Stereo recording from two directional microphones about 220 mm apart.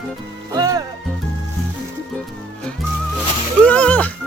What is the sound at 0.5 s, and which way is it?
Music, 15° right (ahead or behind).